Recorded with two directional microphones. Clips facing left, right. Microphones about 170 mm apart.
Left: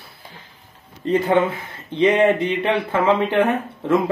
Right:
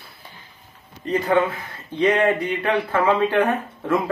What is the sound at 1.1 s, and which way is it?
Speech, 25° left (ahead or behind).